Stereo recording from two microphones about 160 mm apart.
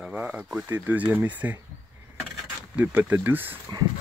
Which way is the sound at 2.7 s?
10° right (ahead or behind).